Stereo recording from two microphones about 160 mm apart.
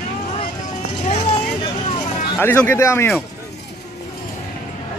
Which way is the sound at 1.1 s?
45° left (ahead or behind).